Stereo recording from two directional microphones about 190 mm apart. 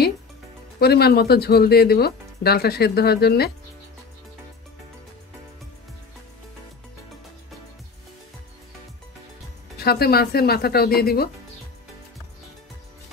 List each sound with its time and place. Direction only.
0.7 s speech: 55° left (ahead or behind)
9.8 s speech: 55° left (ahead or behind)